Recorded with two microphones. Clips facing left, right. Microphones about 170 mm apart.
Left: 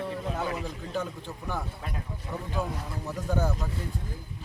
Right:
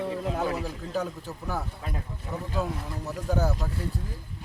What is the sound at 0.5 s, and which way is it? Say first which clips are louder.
Speech: right 2 dB; 5° right (ahead or behind).